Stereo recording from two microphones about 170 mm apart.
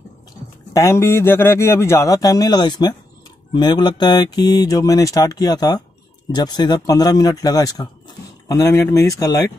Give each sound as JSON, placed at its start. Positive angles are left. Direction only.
{"t": 0.7, "sound": "a man's voice", "side_deg": 15}